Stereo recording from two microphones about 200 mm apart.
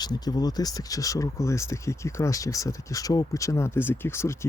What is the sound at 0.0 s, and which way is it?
Speech, 20° left (ahead or behind).